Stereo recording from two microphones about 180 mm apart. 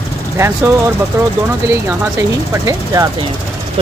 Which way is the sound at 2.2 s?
20° right (ahead or behind).